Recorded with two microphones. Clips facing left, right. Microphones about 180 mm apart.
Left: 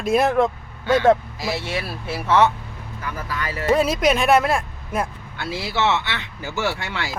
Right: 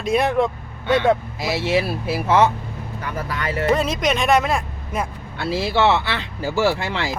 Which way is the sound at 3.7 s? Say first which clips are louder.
Left 2 dB; 5° left (ahead or behind).